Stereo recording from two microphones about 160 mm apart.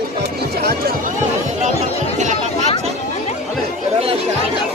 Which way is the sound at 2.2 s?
50° right (ahead or behind).